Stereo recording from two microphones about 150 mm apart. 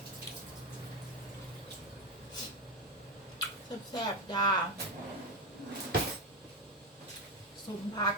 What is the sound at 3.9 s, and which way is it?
Speech, 25° left (ahead or behind).